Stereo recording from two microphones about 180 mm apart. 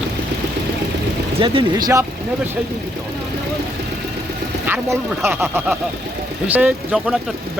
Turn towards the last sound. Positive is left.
turn(degrees=-5)  # may be behind; listen again after turning